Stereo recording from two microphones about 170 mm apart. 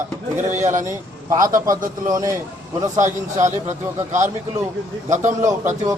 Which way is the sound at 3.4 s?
45° right (ahead or behind).